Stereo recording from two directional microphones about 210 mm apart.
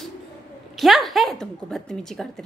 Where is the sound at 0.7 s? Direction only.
Centre (ahead or behind).